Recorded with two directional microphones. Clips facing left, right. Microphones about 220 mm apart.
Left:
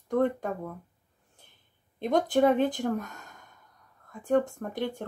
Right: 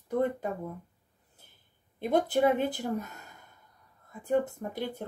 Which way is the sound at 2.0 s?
5° right (ahead or behind).